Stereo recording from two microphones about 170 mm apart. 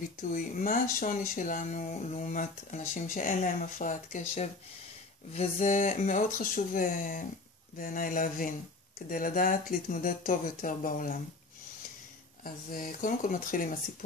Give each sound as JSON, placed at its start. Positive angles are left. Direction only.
{"t": 0.2, "sound": "speech", "side_deg": 50}
{"t": 12.4, "sound": "speech", "side_deg": 55}